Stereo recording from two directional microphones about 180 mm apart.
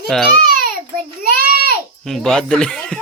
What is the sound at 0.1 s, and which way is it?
Speech, 5° left (ahead or behind).